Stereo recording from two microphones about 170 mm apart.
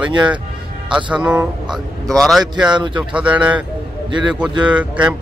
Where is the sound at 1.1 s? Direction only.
10° right (ahead or behind).